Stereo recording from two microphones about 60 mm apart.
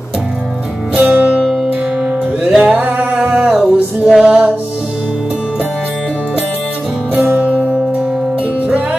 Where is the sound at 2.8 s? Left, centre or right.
Right.